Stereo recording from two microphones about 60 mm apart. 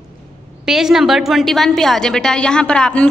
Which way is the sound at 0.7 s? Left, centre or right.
Centre.